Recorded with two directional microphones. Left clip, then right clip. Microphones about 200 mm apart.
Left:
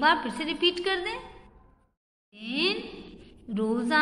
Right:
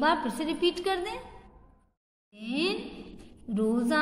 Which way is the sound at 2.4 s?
15° right (ahead or behind).